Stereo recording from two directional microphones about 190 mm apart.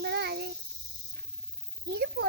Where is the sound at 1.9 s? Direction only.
60° right (ahead or behind).